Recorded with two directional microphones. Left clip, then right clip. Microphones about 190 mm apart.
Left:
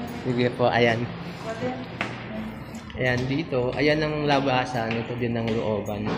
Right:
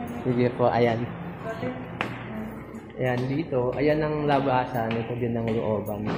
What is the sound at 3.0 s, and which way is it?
A man's voice, 5° left (ahead or behind).